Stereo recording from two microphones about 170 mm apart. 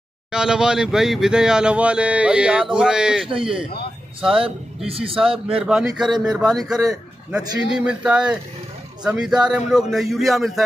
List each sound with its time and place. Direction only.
0.3 s speech: 5° right (ahead or behind)
4.8 s a man's voice: 35° right (ahead or behind)
5.6 s speech: 5° right (ahead or behind)
6.7 s a man's voice: 20° right (ahead or behind)
7.2 s speech: 5° right (ahead or behind)